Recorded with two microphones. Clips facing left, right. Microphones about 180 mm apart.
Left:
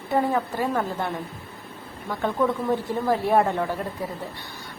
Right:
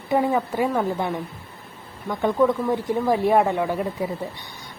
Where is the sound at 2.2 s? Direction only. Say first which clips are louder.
Right 4 dB; 10° right (ahead or behind).